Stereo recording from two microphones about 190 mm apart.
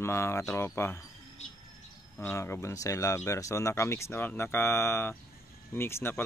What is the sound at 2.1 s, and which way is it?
Speech, 10° left (ahead or behind).